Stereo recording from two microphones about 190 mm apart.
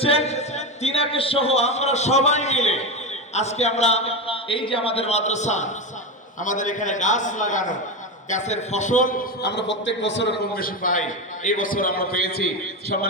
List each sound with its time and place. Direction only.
0.0 s a man's voice: 30° left (ahead or behind); by 13.1 s 50° left (ahead or behind)